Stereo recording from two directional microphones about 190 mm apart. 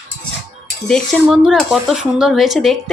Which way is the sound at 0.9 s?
5° left (ahead or behind).